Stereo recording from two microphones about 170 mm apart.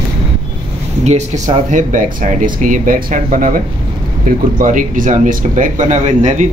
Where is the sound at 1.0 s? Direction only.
45° right (ahead or behind).